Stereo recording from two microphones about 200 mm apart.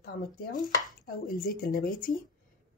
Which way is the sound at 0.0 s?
45° left (ahead or behind).